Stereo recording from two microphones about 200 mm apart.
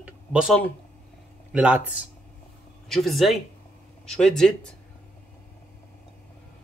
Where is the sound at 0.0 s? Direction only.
5° right (ahead or behind).